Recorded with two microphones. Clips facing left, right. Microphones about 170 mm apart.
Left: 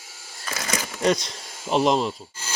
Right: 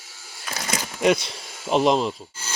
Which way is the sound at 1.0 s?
5° right (ahead or behind).